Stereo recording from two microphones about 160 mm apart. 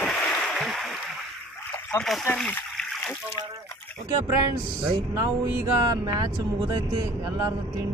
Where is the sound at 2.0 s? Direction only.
5° left (ahead or behind).